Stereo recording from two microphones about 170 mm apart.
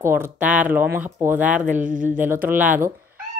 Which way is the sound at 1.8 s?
50° right (ahead or behind).